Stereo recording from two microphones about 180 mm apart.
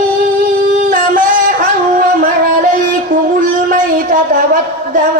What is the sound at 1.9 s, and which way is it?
Music, 50° right (ahead or behind).